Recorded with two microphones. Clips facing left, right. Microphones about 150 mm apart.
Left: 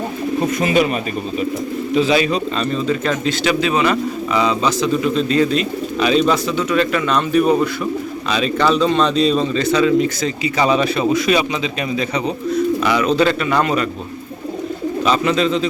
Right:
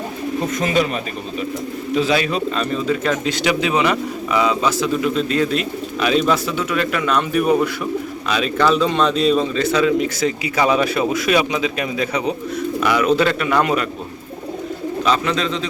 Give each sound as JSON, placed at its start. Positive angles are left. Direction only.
{"t": 0.6, "sound": "speech", "side_deg": 10}
{"t": 2.0, "sound": "speech", "side_deg": 0}
{"t": 15.0, "sound": "speech", "side_deg": 5}